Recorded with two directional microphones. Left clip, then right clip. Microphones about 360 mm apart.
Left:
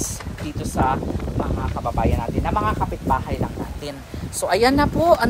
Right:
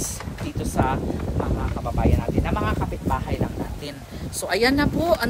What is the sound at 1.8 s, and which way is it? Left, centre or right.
Speech, left.